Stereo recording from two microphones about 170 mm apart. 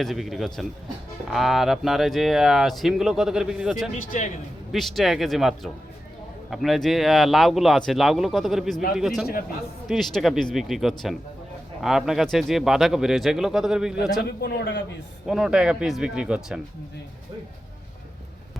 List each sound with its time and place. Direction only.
0.0 s speech: centre (ahead or behind)
3.9 s a man's voice: 50° left (ahead or behind)
4.7 s speech: centre (ahead or behind)
14.3 s a man's voice: 90° left
15.3 s speech: 5° right (ahead or behind)